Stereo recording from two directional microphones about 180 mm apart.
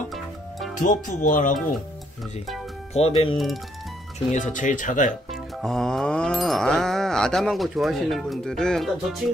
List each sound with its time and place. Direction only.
0.1 s music: centre (ahead or behind)
0.7 s speech: 45° left (ahead or behind)
2.9 s speech: 35° left (ahead or behind)
5.3 s music: centre (ahead or behind)